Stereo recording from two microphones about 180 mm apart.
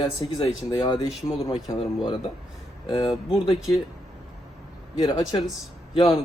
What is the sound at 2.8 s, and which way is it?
Speech, 30° left (ahead or behind).